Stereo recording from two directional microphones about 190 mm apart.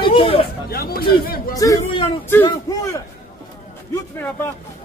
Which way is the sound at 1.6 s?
20° left (ahead or behind).